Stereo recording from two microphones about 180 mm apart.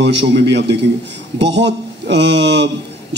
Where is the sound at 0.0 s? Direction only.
75° right (ahead or behind).